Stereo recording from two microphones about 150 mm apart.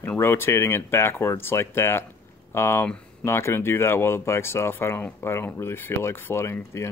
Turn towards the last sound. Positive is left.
turn(degrees=20)  # may be behind; listen again after turning